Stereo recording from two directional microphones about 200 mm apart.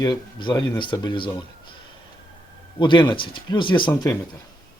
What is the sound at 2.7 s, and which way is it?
A man's voice, 25° left (ahead or behind).